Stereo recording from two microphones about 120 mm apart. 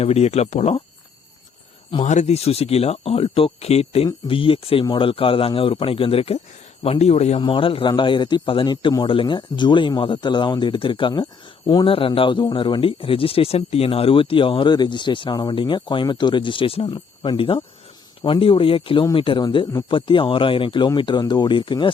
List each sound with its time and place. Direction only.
0.0 s speech: 60° left (ahead or behind)
2.0 s speech: 70° left (ahead or behind)
4.0 s speech: 45° left (ahead or behind)
7.4 s speech: 45° left (ahead or behind)
11.9 s speech: 50° left (ahead or behind)